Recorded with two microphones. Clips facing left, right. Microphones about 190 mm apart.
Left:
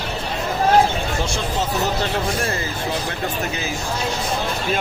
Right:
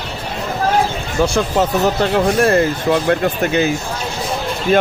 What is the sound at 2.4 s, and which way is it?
Speech, 60° right (ahead or behind).